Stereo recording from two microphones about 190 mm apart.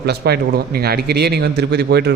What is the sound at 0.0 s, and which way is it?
A man's voice, 55° right (ahead or behind).